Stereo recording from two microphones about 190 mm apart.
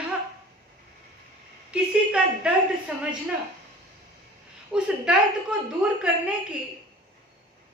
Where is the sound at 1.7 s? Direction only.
5° right (ahead or behind).